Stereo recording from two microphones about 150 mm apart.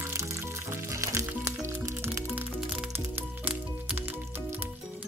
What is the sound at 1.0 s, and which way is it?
Music, 20° right (ahead or behind).